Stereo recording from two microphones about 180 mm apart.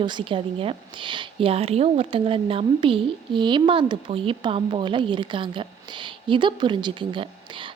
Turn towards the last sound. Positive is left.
turn(degrees=-25)  # may be behind; listen again after turning